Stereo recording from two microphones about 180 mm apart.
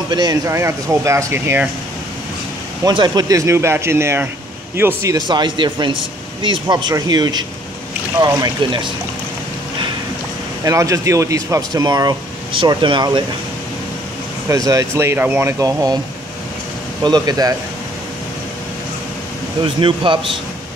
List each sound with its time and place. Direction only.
0.1 s speech: 20° right (ahead or behind)
2.8 s speech: 25° right (ahead or behind)
10.6 s speech: 15° right (ahead or behind)
14.5 s speech: 20° right (ahead or behind)
17.0 s speech: 20° right (ahead or behind)
19.6 s speech: 30° right (ahead or behind)